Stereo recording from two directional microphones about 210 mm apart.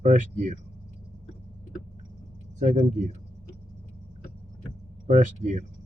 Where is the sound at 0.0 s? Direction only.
35° right (ahead or behind).